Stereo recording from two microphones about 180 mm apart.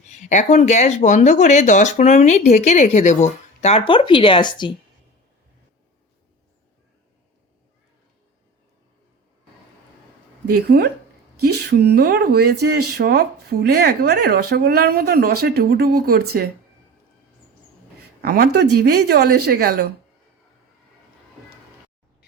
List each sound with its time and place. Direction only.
0.0 s speech: 40° left (ahead or behind); by 4.8 s 25° left (ahead or behind)
10.4 s speech: 65° right (ahead or behind)
18.2 s speech: 60° right (ahead or behind)